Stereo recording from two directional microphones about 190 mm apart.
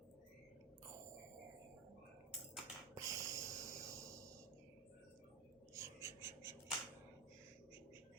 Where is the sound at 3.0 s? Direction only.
15° right (ahead or behind).